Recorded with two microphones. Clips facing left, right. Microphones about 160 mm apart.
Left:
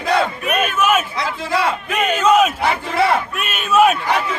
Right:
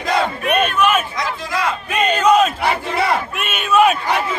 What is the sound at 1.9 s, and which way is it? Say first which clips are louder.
Battle cry: right 1 dB; 10° left (ahead or behind).